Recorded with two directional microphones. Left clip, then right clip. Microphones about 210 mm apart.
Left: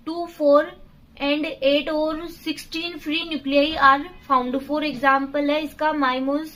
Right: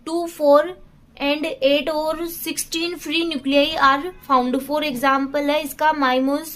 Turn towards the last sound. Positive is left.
turn(degrees=-45)  # may be behind; listen again after turning